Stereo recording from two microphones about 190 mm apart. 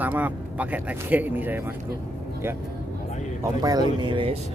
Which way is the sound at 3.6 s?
20° right (ahead or behind).